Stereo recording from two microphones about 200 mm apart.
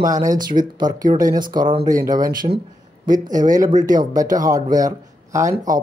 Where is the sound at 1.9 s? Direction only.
40° right (ahead or behind).